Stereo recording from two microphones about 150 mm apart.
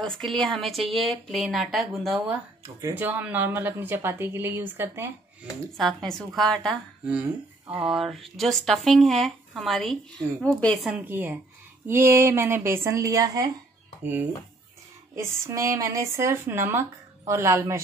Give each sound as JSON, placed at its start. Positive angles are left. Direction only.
{"t": 0.0, "sound": "speech", "side_deg": 0}
{"t": 2.6, "sound": "speech", "side_deg": -20}
{"t": 5.8, "sound": "speech", "side_deg": 0}
{"t": 7.1, "sound": "speech", "side_deg": -10}
{"t": 10.9, "sound": "a woman's voice", "side_deg": -15}
{"t": 15.1, "sound": "speech", "side_deg": -20}